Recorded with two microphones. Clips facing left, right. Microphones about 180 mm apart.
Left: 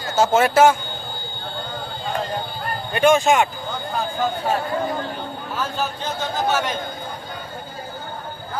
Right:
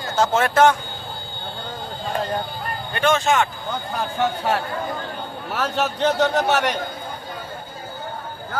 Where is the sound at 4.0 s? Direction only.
75° right (ahead or behind).